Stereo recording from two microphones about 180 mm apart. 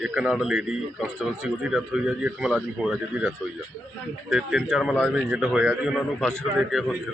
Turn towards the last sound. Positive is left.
turn(degrees=-5)  # may be behind; listen again after turning